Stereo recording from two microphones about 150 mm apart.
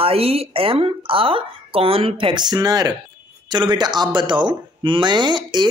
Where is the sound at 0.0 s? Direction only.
40° right (ahead or behind).